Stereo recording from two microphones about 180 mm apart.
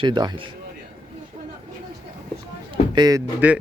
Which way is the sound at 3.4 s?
10° right (ahead or behind).